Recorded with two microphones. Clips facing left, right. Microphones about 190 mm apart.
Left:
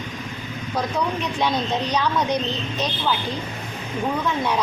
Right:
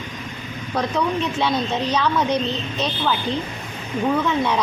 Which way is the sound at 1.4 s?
10° left (ahead or behind).